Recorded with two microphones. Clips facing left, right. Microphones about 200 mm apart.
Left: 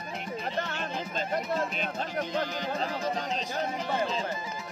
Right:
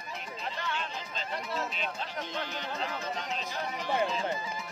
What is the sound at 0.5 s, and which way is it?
Speech, 45° left (ahead or behind).